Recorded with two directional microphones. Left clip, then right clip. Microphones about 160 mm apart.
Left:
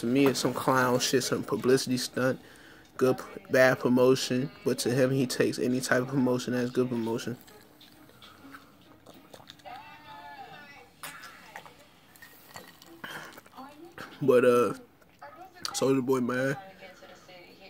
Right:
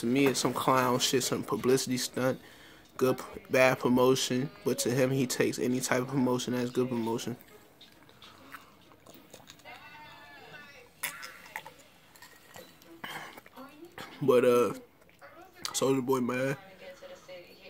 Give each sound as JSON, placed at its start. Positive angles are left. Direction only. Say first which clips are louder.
{"t": 0.0, "sound": "speech", "louder": "left 2 dB", "side_deg": -5}
{"t": 13.0, "sound": "a sound", "louder": "even", "side_deg": -10}
{"t": 13.9, "sound": "speech", "louder": "left 2 dB", "side_deg": -5}